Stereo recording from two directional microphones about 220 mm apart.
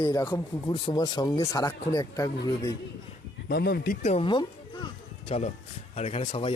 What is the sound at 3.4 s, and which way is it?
Speech, 45° left (ahead or behind).